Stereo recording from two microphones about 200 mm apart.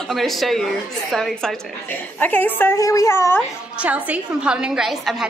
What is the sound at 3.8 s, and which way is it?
Speech, 5° right (ahead or behind).